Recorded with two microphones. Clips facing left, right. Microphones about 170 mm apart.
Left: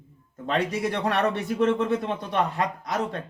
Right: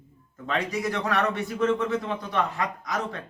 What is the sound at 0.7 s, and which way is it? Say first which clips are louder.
Speech: left 1 dB; 30° left (ahead or behind).